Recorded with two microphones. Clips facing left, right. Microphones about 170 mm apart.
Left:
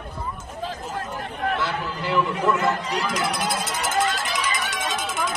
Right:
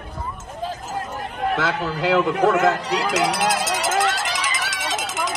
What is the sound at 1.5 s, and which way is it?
Run, 90° right.